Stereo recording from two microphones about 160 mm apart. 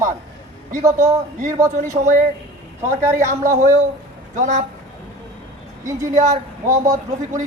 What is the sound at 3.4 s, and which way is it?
A man's voice, 50° right (ahead or behind).